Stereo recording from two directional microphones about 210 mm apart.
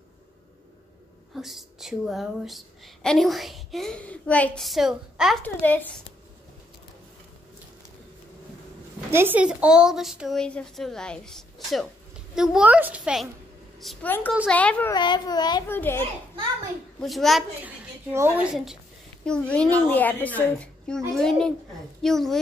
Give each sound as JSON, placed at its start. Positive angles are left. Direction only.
{"t": 1.3, "sound": "a woman's voice", "side_deg": 0}
{"t": 5.4, "sound": "a woman's voice", "side_deg": 10}
{"t": 9.1, "sound": "a woman's voice", "side_deg": -10}
{"t": 14.9, "sound": "a child's voice", "side_deg": 20}
{"t": 17.0, "sound": "a woman's voice", "side_deg": 0}